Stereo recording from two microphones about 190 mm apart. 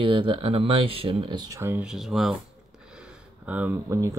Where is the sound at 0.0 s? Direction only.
25° right (ahead or behind); by 2.3 s centre (ahead or behind).